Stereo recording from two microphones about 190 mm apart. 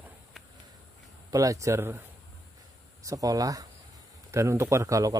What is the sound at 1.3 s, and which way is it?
Speech, 15° right (ahead or behind).